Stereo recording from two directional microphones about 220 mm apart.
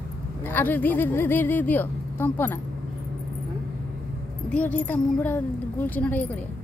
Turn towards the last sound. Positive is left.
turn(degrees=5)  # may be behind; listen again after turning